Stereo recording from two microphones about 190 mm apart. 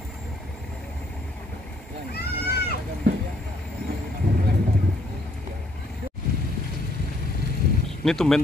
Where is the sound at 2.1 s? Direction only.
55° left (ahead or behind).